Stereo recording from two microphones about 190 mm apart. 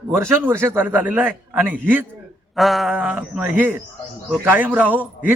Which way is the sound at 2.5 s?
Centre (ahead or behind).